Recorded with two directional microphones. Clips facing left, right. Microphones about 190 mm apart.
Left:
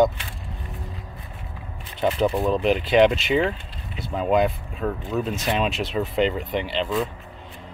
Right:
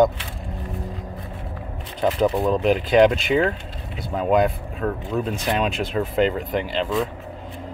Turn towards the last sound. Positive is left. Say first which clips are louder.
# right 1 dB
turn(degrees=0)  # may be behind; listen again after turning